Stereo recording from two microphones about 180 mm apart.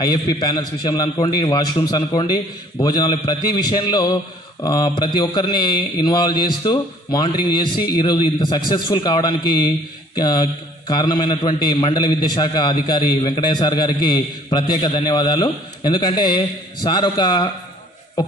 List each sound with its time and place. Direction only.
0.0 s a man's voice: 20° left (ahead or behind)